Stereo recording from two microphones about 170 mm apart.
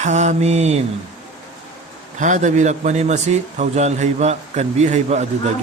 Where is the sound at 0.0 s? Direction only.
45° right (ahead or behind).